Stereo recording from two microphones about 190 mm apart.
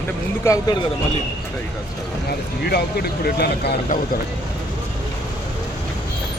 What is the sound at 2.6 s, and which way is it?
Speech, 55° left (ahead or behind).